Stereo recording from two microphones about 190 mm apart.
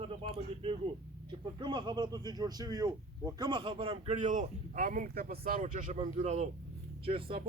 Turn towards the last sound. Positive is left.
turn(degrees=-30)  # may be behind; listen again after turning